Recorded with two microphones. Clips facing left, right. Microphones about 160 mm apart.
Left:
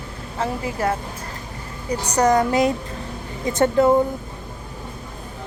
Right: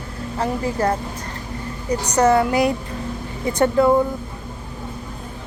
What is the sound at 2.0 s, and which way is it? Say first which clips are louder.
A woman's voice: right 1 dB; 10° left (ahead or behind).